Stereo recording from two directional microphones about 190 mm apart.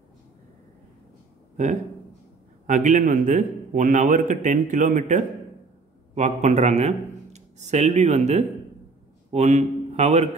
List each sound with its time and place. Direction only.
2.6 s a man's voice: 40° right (ahead or behind)